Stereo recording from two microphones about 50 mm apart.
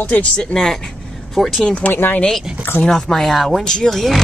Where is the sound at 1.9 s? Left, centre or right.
Left.